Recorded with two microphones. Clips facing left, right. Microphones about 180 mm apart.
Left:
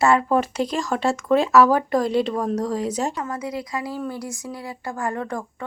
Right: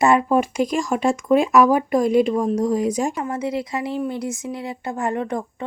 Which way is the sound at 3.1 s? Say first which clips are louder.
Right 4 dB; 25° right (ahead or behind).